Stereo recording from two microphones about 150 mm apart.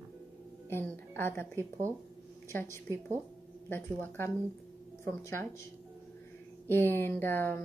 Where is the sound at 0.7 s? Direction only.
15° left (ahead or behind).